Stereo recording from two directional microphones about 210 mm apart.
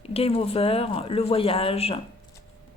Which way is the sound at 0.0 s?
30° left (ahead or behind).